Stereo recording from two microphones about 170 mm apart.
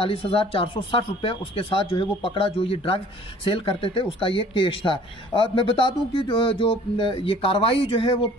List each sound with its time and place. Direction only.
0.0 s speech: 30° left (ahead or behind)